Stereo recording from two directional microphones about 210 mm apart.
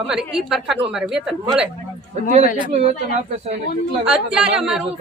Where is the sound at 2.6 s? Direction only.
30° right (ahead or behind).